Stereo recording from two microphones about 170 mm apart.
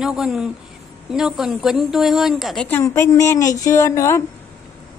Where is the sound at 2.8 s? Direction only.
15° left (ahead or behind).